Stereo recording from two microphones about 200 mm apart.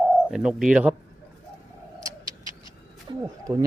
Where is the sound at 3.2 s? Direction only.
15° right (ahead or behind).